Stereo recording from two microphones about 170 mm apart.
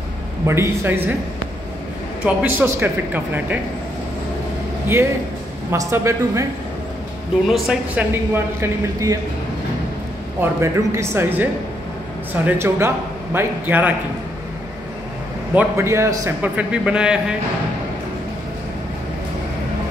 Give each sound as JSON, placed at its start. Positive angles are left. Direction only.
{"t": 0.5, "sound": "a man's voice", "side_deg": -15}
{"t": 2.2, "sound": "a man's voice", "side_deg": -10}
{"t": 5.7, "sound": "a man's voice", "side_deg": -15}
{"t": 7.4, "sound": "a man's voice", "side_deg": 0}
{"t": 10.4, "sound": "a man's voice", "side_deg": -15}
{"t": 12.4, "sound": "a man's voice", "side_deg": -15}
{"t": 15.5, "sound": "a man's voice", "side_deg": -15}